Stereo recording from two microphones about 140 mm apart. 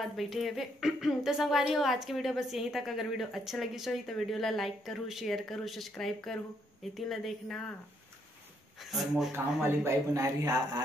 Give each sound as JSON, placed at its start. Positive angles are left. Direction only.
{"t": 0.0, "sound": "a woman's voice", "side_deg": 0}
{"t": 8.9, "sound": "a woman's voice", "side_deg": 0}
{"t": 9.3, "sound": "a man's voice", "side_deg": -15}